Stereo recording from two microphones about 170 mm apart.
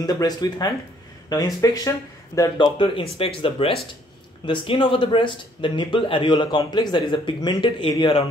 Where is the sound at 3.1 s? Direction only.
35° left (ahead or behind).